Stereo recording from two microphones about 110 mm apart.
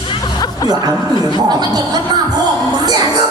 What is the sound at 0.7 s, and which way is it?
Speech, 35° right (ahead or behind).